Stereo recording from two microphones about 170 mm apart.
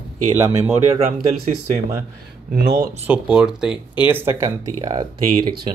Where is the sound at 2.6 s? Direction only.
80° right.